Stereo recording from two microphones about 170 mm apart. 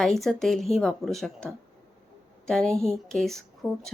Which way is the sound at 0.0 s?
Centre (ahead or behind).